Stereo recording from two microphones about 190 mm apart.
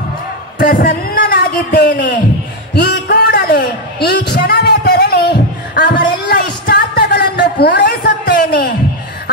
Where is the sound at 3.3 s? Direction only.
50° left (ahead or behind).